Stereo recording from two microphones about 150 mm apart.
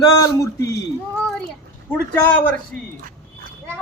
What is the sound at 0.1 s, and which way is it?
Speech, 25° left (ahead or behind).